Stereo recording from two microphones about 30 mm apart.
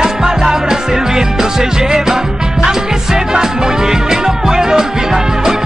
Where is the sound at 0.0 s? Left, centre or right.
Centre.